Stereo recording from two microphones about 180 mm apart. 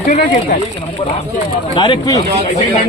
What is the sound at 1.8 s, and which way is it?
Speech, 20° left (ahead or behind).